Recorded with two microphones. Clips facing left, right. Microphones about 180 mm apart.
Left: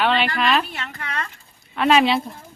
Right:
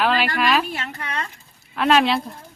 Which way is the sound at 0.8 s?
35° right (ahead or behind).